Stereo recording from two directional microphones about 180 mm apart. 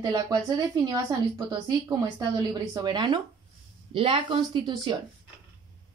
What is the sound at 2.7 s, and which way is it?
A woman's voice, 20° right (ahead or behind).